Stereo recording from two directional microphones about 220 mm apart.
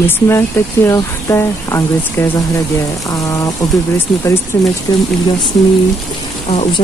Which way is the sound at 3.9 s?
10° left (ahead or behind).